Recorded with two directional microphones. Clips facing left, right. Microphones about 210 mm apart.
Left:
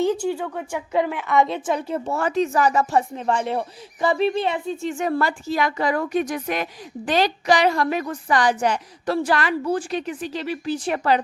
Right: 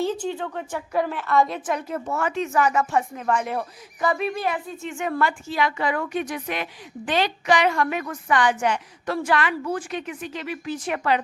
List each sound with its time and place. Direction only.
0.0 s a woman's voice: 10° left (ahead or behind); by 11.2 s 35° left (ahead or behind)